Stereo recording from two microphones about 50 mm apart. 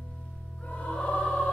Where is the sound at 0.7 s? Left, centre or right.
Left.